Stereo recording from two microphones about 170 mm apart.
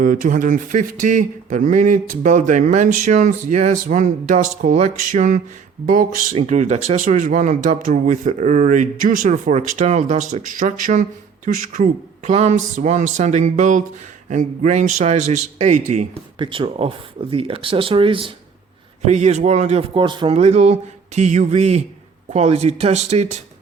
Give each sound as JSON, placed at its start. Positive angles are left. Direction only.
{"t": 0.0, "sound": "speech", "side_deg": -50}
{"t": 6.3, "sound": "speech", "side_deg": -45}
{"t": 16.4, "sound": "speech", "side_deg": -30}